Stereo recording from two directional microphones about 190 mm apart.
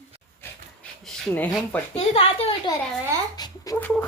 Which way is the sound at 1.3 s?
10° left (ahead or behind).